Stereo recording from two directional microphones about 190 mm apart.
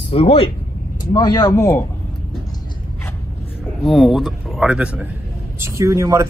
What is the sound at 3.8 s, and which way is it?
A man's voice, centre (ahead or behind).